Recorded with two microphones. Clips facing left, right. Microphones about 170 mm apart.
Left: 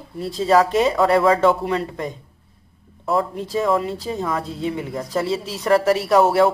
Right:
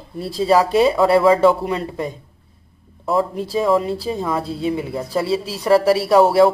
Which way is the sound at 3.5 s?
10° right (ahead or behind).